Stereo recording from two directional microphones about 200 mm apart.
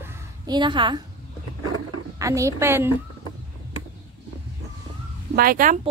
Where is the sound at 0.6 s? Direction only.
25° right (ahead or behind).